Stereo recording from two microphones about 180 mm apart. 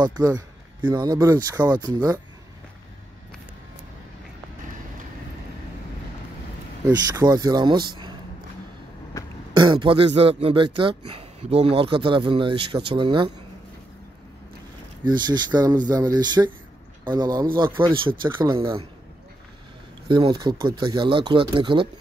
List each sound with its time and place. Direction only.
0.0 s speech: 20° right (ahead or behind)
6.9 s speech: 20° right (ahead or behind)
9.2 s throat clearing: 20° left (ahead or behind)
9.5 s speech: 25° right (ahead or behind)
15.0 s speech: 25° right (ahead or behind)
20.1 s speech: 25° right (ahead or behind)